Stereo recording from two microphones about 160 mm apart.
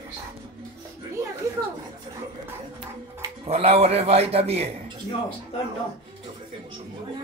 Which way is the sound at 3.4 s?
40° right (ahead or behind).